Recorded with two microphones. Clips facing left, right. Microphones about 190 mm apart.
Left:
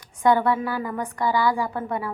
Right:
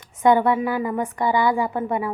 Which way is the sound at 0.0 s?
20° right (ahead or behind).